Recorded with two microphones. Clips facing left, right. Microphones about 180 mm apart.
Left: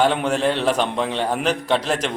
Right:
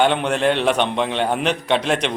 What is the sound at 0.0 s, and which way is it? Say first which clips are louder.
A man's voice: right 1 dB; centre (ahead or behind).